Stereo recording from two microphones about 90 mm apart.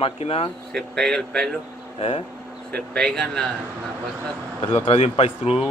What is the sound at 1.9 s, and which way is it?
Speech, 90° left.